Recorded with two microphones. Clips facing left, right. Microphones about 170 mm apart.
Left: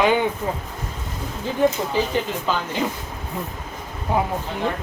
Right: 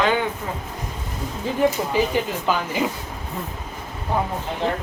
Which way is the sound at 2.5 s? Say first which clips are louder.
Right 2 dB; 10° right (ahead or behind).